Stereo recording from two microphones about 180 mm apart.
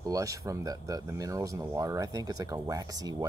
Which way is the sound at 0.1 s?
20° right (ahead or behind).